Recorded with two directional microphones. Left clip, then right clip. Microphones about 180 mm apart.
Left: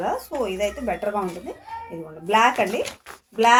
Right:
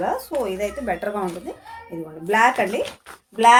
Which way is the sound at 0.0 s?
25° right (ahead or behind).